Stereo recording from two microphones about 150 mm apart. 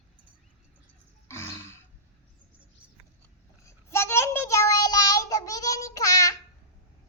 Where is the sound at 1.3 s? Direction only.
15° left (ahead or behind).